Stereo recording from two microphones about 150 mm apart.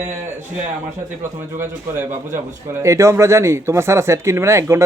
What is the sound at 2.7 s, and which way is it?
Speech, 20° right (ahead or behind).